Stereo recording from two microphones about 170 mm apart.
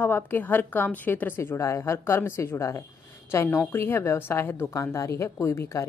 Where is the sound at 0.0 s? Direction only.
10° left (ahead or behind).